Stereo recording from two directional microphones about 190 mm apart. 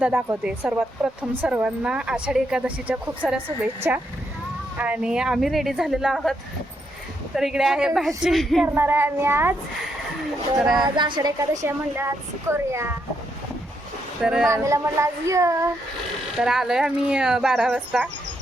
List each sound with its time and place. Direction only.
0.0 s speech: 10° right (ahead or behind)
7.3 s speech: centre (ahead or behind)
8.6 s speech: 10° right (ahead or behind)
10.6 s speech: centre (ahead or behind)
10.8 s a woman's voice: 25° right (ahead or behind)
14.2 s speech: 5° right (ahead or behind)
14.4 s speech: 15° right (ahead or behind)
16.3 s speech: centre (ahead or behind)